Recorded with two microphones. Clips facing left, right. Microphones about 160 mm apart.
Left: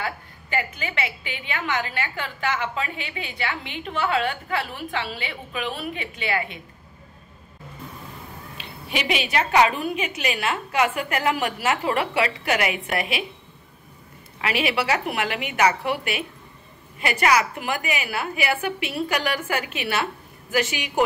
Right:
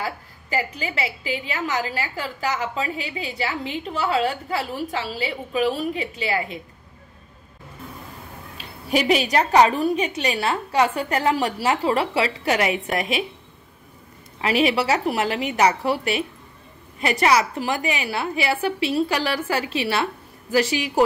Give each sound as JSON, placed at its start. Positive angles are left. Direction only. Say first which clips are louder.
{"t": 0.0, "sound": "a woman's voice", "louder": "right 1 dB", "side_deg": -35}
{"t": 8.5, "sound": "a woman's voice", "louder": "right 7 dB", "side_deg": -40}
{"t": 14.4, "sound": "a woman's voice", "louder": "right 4 dB", "side_deg": -35}